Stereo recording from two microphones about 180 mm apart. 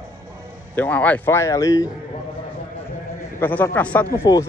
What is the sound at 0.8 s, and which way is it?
Speech, 10° left (ahead or behind).